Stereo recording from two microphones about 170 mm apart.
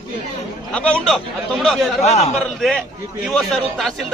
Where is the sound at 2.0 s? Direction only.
40° left (ahead or behind).